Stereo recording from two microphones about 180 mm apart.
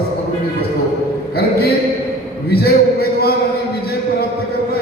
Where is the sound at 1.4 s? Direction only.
60° left (ahead or behind).